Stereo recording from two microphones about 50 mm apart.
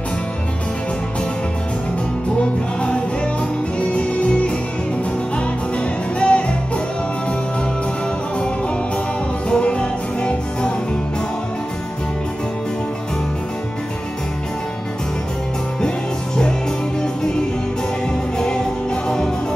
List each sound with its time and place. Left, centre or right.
3.9 s music: left
6.1 s music: left
9.5 s music: left
18.4 s music: centre